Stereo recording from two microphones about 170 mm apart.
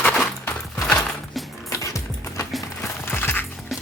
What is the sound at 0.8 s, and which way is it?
Horse, 5° left (ahead or behind).